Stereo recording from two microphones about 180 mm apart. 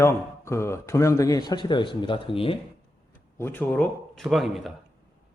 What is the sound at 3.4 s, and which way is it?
Speech, 10° left (ahead or behind).